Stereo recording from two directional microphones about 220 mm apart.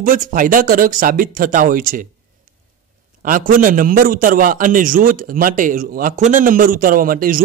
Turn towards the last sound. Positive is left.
turn(degrees=-40)  # may be behind; listen again after turning